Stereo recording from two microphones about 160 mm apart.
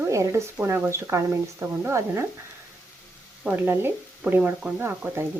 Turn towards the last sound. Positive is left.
turn(degrees=-10)  # may be behind; listen again after turning